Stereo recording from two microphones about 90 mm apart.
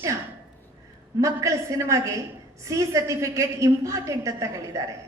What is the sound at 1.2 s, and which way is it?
A woman's voice, 35° right (ahead or behind).